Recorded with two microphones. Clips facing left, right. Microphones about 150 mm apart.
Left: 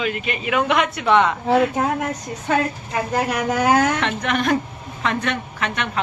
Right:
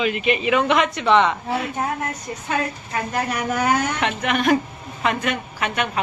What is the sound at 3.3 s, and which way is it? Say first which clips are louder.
Speech: left 3 dB; 90° left.